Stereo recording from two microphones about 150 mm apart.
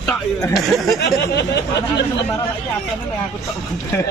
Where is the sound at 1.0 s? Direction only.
90° left.